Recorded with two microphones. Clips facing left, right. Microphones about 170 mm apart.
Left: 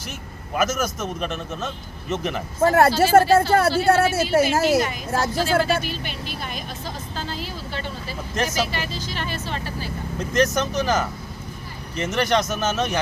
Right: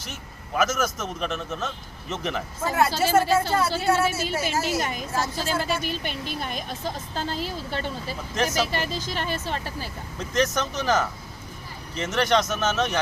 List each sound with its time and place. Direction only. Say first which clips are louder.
0.5 s a man's voice: left 1 dB; 5° left (ahead or behind)
2.6 s speech: left 7 dB; 60° left (ahead or behind)
8.4 s a man's voice: even; 5° left (ahead or behind)
10.3 s a man's voice: left 4 dB; 5° left (ahead or behind)